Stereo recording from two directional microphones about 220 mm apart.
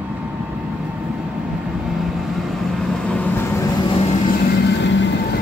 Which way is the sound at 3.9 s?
25° left (ahead or behind).